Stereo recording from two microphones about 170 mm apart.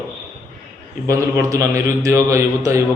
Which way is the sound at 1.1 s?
20° right (ahead or behind).